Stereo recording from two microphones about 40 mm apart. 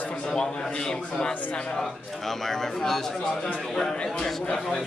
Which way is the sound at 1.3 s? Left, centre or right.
Left.